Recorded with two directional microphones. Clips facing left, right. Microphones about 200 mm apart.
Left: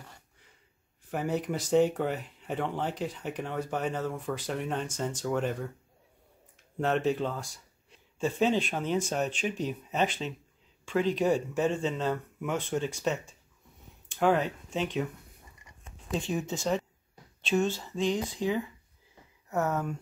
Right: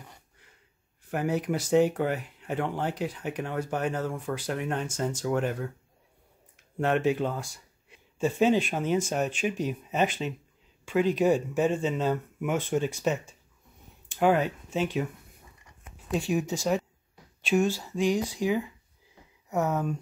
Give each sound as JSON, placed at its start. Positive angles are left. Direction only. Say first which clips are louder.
{"t": 1.1, "sound": "speech", "louder": "right 3 dB", "side_deg": -5}
{"t": 6.8, "sound": "speech", "louder": "right 2 dB", "side_deg": -5}
{"t": 14.2, "sound": "speech", "louder": "right 2 dB", "side_deg": -5}
{"t": 16.1, "sound": "speech", "louder": "right 4 dB", "side_deg": -10}